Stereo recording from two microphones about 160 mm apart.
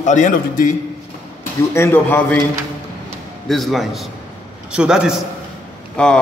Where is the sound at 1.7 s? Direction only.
15° left (ahead or behind).